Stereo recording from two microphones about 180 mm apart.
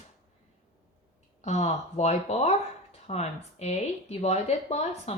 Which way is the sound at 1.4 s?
40° left (ahead or behind).